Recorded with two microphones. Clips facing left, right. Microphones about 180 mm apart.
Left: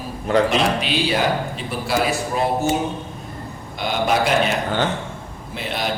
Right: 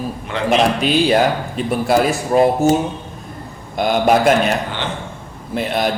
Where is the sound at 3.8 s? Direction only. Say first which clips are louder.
Right 6 dB; 50° right (ahead or behind).